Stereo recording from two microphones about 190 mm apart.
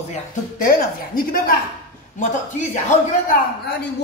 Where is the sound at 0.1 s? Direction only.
45° left (ahead or behind).